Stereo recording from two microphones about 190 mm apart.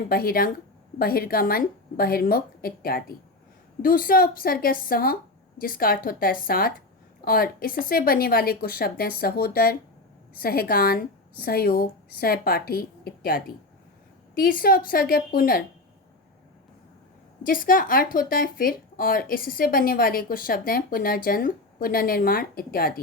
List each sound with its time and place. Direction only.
0.1 s a woman's voice: 50° left (ahead or behind)
17.4 s a woman's voice: 45° left (ahead or behind)